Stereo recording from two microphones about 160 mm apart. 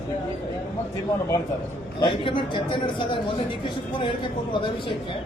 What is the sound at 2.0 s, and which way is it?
Speech, 30° left (ahead or behind).